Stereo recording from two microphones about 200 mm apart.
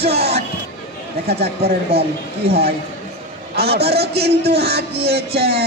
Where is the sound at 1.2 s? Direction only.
55° right (ahead or behind).